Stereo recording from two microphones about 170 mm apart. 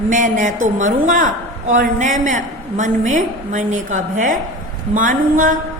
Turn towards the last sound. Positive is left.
turn(degrees=-50)  # may be behind; listen again after turning